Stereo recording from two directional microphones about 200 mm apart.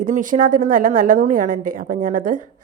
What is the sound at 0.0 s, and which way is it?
A woman's voice, 40° right (ahead or behind).